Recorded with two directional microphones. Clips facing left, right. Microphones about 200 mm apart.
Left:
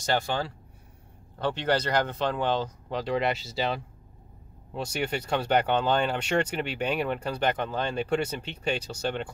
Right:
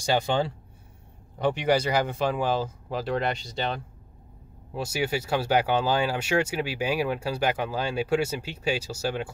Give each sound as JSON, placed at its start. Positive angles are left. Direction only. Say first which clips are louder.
{"t": 0.0, "sound": "speech", "louder": "right 3 dB", "side_deg": -15}